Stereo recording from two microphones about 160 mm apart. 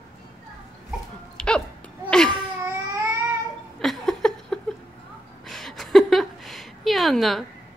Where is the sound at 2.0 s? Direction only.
5° left (ahead or behind).